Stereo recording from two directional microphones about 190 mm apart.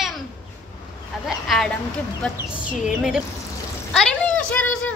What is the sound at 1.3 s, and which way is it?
A woman's voice, centre (ahead or behind).